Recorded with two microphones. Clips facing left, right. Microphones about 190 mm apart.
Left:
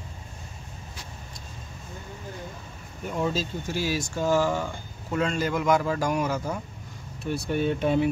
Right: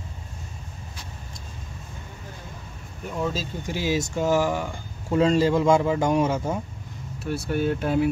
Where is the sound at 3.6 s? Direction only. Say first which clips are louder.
Right 7 dB; 15° right (ahead or behind).